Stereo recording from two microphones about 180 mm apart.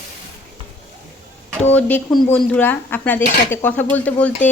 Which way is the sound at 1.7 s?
10° left (ahead or behind).